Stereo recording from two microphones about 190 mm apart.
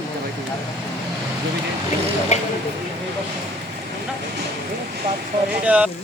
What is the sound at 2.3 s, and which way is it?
Speech, 35° left (ahead or behind).